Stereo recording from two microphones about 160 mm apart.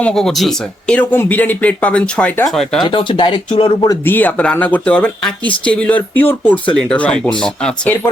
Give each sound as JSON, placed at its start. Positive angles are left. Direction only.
{"t": 0.0, "sound": "speech", "side_deg": 5}
{"t": 2.8, "sound": "speech", "side_deg": 30}
{"t": 3.8, "sound": "speech", "side_deg": 15}